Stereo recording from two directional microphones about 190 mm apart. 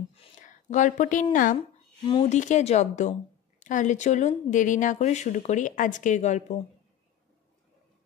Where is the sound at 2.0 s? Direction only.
30° left (ahead or behind).